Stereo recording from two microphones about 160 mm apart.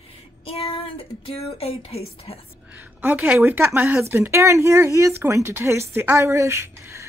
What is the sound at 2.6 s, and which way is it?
A woman's voice, 15° right (ahead or behind).